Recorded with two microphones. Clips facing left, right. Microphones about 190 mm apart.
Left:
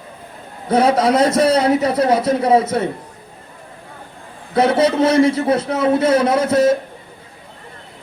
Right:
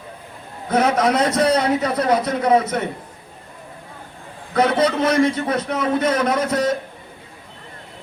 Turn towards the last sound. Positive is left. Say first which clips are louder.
# left 5 dB
turn(degrees=25)  # may be behind; listen again after turning